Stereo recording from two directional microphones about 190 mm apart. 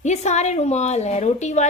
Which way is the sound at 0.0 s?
35° left (ahead or behind).